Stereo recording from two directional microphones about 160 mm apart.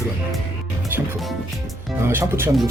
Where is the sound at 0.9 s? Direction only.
10° right (ahead or behind).